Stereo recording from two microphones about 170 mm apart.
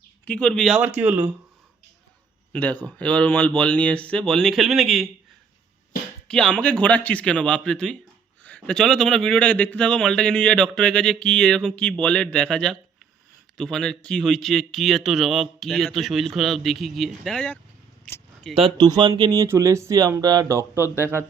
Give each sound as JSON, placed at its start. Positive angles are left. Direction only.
{"t": 0.3, "sound": "a man's voice", "side_deg": 5}
{"t": 0.8, "sound": "speech", "side_deg": -10}
{"t": 2.5, "sound": "speech", "side_deg": 10}
{"t": 6.2, "sound": "a man's voice", "side_deg": 5}
{"t": 18.5, "sound": "speech", "side_deg": -30}